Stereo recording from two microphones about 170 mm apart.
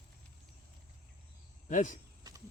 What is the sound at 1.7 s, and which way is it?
Speech, 50° left (ahead or behind).